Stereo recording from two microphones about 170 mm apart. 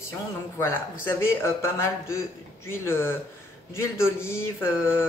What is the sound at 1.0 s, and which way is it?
Mantra, 15° left (ahead or behind).